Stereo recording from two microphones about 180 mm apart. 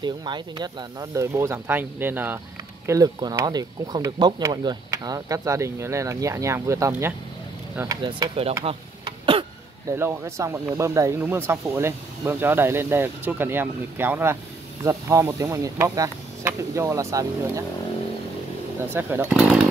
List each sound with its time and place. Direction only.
0.0 s speech: 25° right (ahead or behind)
8.0 s speech: 30° right (ahead or behind)
8.6 s a sound: 30° right (ahead or behind)
9.9 s speech: 15° right (ahead or behind)
18.9 s speech: 10° right (ahead or behind)